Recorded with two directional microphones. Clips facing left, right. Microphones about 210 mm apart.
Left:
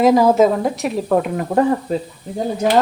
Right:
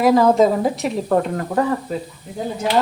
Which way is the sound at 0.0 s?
15° left (ahead or behind).